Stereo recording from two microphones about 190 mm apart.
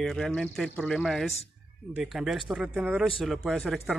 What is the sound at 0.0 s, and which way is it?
Speech, 5° left (ahead or behind).